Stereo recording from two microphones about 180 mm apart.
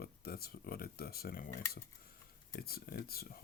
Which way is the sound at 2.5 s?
55° left (ahead or behind).